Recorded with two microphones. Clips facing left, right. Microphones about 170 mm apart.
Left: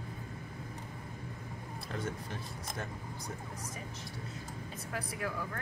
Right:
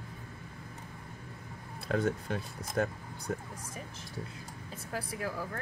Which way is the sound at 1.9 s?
70° right (ahead or behind).